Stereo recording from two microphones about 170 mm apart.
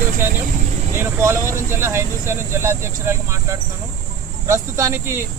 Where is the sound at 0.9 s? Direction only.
15° right (ahead or behind).